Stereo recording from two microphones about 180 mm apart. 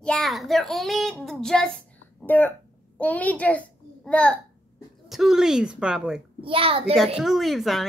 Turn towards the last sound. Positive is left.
turn(degrees=0)  # may be behind; listen again after turning